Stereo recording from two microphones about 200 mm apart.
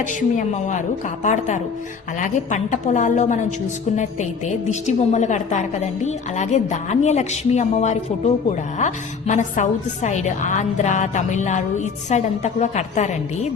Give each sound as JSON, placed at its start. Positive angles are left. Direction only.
{"t": 0.1, "sound": "a woman's voice", "side_deg": 40}